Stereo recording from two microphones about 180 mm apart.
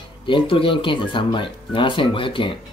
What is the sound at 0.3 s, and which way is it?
Speech, 30° left (ahead or behind).